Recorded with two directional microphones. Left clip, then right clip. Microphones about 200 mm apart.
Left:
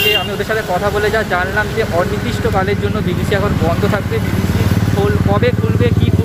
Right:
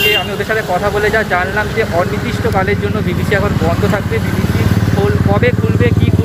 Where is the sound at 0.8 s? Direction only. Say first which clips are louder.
Right 2 dB; 10° left (ahead or behind).